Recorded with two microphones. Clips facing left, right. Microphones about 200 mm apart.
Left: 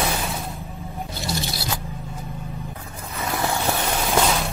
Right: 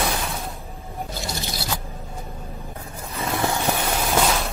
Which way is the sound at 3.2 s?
20° right (ahead or behind).